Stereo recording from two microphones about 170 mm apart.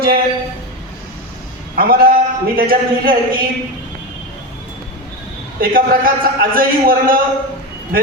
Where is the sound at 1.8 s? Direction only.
60° right (ahead or behind).